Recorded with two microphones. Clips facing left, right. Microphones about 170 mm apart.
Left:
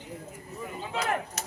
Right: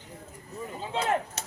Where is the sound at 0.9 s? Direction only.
30° right (ahead or behind).